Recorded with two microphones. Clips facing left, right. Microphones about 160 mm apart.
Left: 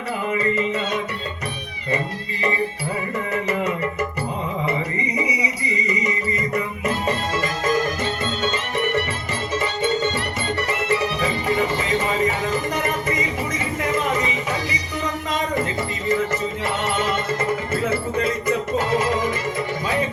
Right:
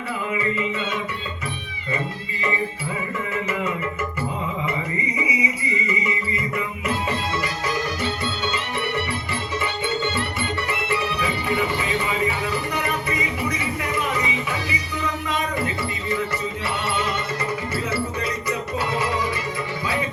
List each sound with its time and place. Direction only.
0.3 s music: 40° left (ahead or behind)
5.1 s music: 40° left (ahead or behind)